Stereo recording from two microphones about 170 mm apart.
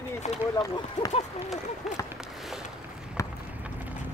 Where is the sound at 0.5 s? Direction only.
25° left (ahead or behind).